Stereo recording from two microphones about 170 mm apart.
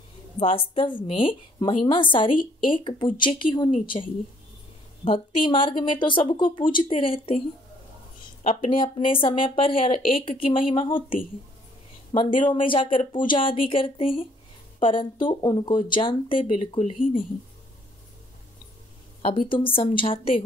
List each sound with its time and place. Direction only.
0.6 s speech: 30° left (ahead or behind)
8.5 s speech: 35° left (ahead or behind)
19.2 s speech: 30° left (ahead or behind)